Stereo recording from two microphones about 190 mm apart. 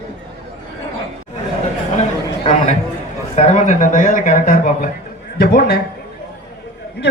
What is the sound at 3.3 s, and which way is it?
Speech, 40° left (ahead or behind).